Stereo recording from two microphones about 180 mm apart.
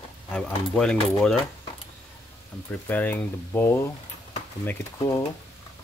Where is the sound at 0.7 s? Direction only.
5° left (ahead or behind).